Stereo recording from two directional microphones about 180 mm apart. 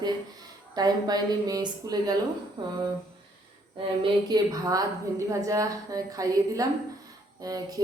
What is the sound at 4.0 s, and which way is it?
A woman's voice, 20° right (ahead or behind).